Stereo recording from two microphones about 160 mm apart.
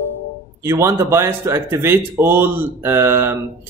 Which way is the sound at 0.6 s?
15° right (ahead or behind).